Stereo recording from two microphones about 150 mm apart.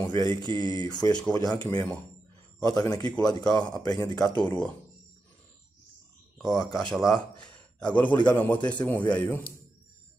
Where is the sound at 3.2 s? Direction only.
25° left (ahead or behind).